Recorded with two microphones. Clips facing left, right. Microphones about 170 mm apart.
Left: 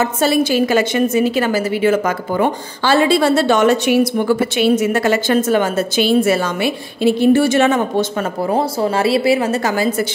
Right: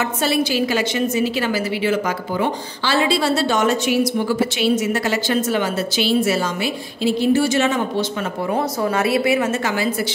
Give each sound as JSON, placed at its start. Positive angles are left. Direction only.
{"t": 0.0, "sound": "a woman's voice", "side_deg": 40}
{"t": 8.5, "sound": "speech", "side_deg": 30}